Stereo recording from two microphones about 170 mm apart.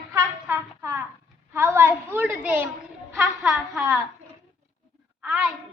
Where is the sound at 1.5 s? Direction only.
15° right (ahead or behind).